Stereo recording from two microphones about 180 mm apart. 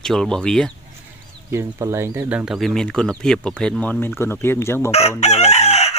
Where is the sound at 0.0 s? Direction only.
5° left (ahead or behind).